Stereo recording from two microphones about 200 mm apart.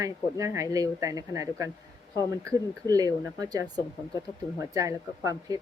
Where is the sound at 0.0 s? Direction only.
15° right (ahead or behind).